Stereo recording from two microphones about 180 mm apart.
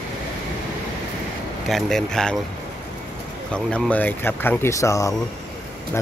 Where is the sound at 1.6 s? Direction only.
Centre (ahead or behind).